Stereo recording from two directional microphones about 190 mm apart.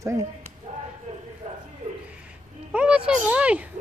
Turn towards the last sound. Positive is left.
turn(degrees=-5)  # may be behind; listen again after turning